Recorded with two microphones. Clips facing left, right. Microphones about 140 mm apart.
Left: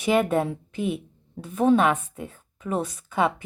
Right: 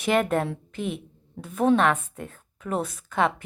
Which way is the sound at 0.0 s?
5° left (ahead or behind).